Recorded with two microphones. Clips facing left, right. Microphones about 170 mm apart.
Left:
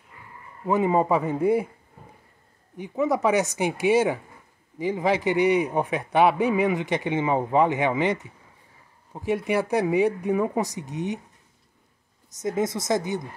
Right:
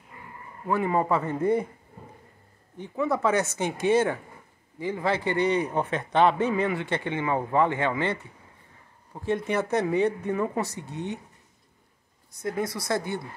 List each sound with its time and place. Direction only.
0.7 s a man's voice: 20° left (ahead or behind)
2.8 s a man's voice: 15° left (ahead or behind)
12.4 s speech: 20° left (ahead or behind)